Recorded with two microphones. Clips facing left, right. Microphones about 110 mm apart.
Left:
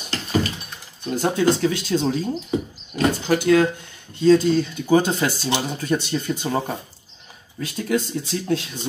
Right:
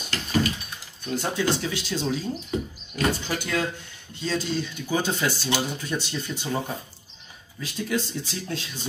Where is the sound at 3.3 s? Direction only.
55° left (ahead or behind).